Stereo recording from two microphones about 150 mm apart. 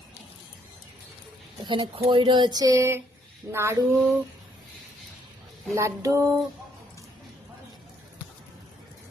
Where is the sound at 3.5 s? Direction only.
15° right (ahead or behind).